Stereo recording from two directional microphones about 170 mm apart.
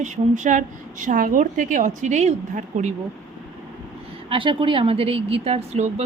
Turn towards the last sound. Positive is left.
turn(degrees=-40)  # may be behind; listen again after turning